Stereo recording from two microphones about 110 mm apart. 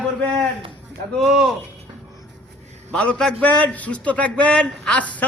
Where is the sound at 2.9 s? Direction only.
10° left (ahead or behind).